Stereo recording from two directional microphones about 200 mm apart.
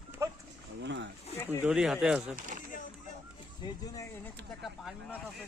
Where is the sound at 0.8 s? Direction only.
60° right (ahead or behind).